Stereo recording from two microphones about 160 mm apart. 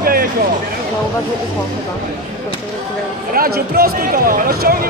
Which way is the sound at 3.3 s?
70° right (ahead or behind).